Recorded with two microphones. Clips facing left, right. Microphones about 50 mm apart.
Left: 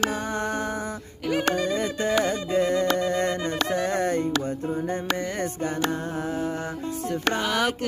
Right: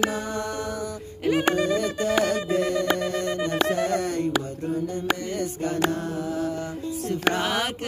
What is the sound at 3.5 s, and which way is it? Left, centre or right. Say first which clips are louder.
Music: right 2 dB; centre.